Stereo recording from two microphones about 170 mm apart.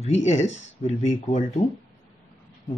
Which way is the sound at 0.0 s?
40° left (ahead or behind).